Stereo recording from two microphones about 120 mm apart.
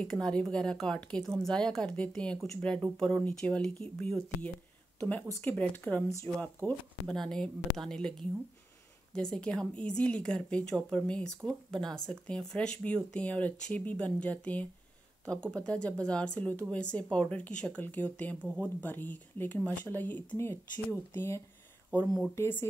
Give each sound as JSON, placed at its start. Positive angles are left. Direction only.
{"t": 0.0, "sound": "speech", "side_deg": 5}
{"t": 22.0, "sound": "speech", "side_deg": 0}
{"t": 22.3, "sound": "speech", "side_deg": 20}